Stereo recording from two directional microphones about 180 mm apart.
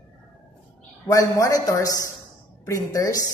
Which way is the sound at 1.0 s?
20° left (ahead or behind).